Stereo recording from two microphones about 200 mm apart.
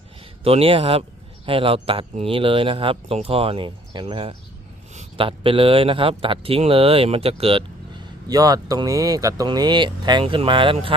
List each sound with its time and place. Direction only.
0.4 s speech: 30° right (ahead or behind)
8.3 s speech: 20° right (ahead or behind)